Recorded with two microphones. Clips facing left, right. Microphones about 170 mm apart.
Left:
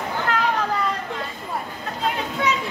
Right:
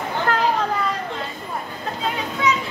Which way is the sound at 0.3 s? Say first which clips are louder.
Right 3 dB; 40° right (ahead or behind).